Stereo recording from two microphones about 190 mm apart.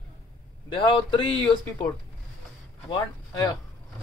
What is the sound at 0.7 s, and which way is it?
Speech, 25° left (ahead or behind).